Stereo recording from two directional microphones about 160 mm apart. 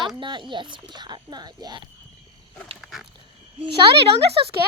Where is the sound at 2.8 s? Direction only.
Centre (ahead or behind).